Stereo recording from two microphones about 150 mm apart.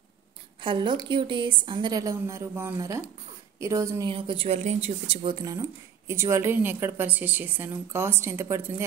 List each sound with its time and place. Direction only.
0.6 s a woman's voice: 35° right (ahead or behind)
4.1 s a woman's voice: 35° right (ahead or behind)
4.6 s speech: 45° right (ahead or behind); by 8.8 s 15° right (ahead or behind)